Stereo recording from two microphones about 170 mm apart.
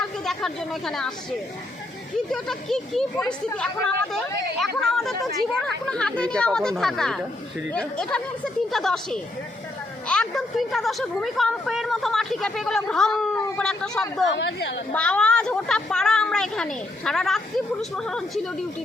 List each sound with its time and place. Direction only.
0.3 s a woman's voice: centre (ahead or behind)
2.3 s a woman's voice: centre (ahead or behind)
14.3 s a woman's voice: 90° left
14.9 s a woman's voice: 5° left (ahead or behind)